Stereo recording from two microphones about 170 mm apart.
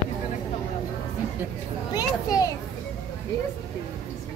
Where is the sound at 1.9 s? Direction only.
20° left (ahead or behind).